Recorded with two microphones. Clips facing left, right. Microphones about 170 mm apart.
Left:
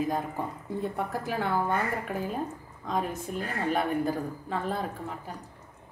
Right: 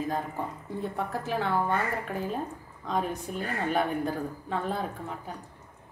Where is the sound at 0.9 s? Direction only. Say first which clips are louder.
Even; 10° left (ahead or behind).